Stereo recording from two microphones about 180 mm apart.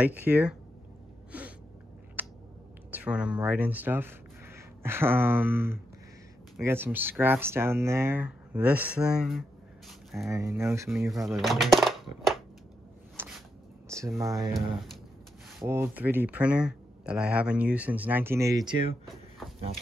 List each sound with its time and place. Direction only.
0.0 s speech: 10° right (ahead or behind)
1.3 s gasp: 10° right (ahead or behind)
2.2 s a sound: 10° right (ahead or behind)
2.9 s speech: 5° right (ahead or behind)
10.2 s speech: 15° right (ahead or behind)
11.2 s speech: centre (ahead or behind)
13.8 s speech: 15° right (ahead or behind)
15.6 s speech: 15° right (ahead or behind)